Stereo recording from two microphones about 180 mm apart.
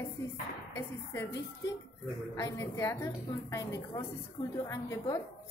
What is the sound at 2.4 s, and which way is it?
Speech, 15° left (ahead or behind).